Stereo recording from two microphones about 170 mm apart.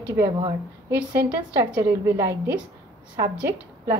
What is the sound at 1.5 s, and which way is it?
Speech, 10° right (ahead or behind).